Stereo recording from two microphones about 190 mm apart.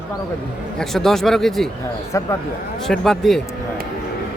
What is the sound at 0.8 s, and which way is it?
Speech, centre (ahead or behind).